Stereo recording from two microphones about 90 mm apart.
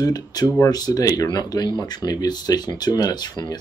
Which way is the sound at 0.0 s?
45° left (ahead or behind).